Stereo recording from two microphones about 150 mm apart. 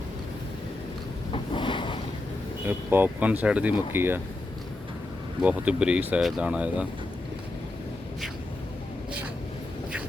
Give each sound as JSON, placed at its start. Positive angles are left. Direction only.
{"t": 1.3, "sound": "boat", "side_deg": 35}
{"t": 2.6, "sound": "speech", "side_deg": -15}
{"t": 5.4, "sound": "speech", "side_deg": -10}